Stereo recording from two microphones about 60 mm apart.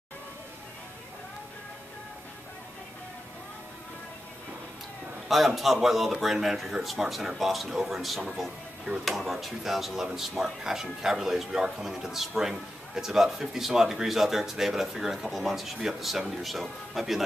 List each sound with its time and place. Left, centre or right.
5.3 s a man's voice: centre